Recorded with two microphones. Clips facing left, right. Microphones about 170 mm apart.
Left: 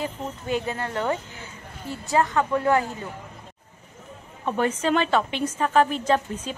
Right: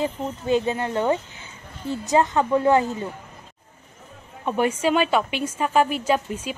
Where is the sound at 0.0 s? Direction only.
20° right (ahead or behind).